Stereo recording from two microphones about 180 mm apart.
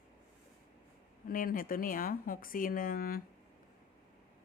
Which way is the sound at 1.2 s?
50° left (ahead or behind).